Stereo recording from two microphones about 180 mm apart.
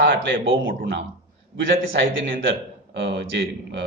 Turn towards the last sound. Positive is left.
turn(degrees=-80)